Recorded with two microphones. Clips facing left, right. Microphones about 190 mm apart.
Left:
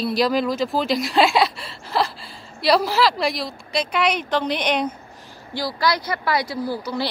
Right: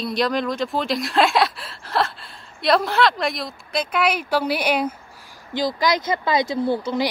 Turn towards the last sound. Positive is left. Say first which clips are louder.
# right 4 dB
turn(degrees=-20)  # may be behind; listen again after turning